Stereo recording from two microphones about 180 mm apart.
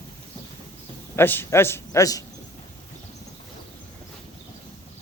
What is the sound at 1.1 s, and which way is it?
A man's voice, 10° left (ahead or behind).